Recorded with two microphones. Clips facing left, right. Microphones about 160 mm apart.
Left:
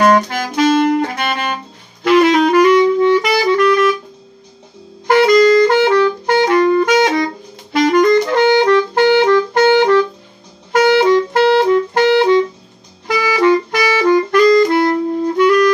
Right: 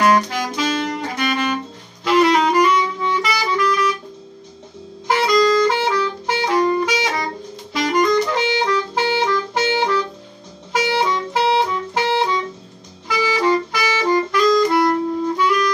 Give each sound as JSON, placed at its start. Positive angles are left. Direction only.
{"t": 0.0, "sound": "saxophone", "side_deg": 50}
{"t": 5.0, "sound": "saxophone", "side_deg": 60}
{"t": 7.7, "sound": "music", "side_deg": 65}
{"t": 13.0, "sound": "music", "side_deg": 55}
{"t": 15.3, "sound": "clarinet", "side_deg": 60}